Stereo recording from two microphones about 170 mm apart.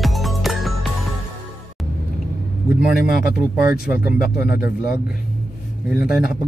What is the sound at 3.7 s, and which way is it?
Speech, 60° left (ahead or behind).